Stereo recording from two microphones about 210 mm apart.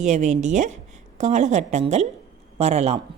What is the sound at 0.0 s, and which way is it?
Speech, 35° right (ahead or behind).